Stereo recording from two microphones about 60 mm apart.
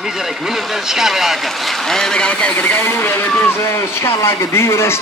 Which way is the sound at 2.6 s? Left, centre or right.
Left.